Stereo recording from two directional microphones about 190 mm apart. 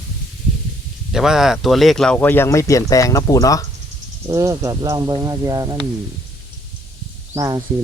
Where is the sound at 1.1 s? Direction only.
5° right (ahead or behind); by 3.7 s 20° left (ahead or behind).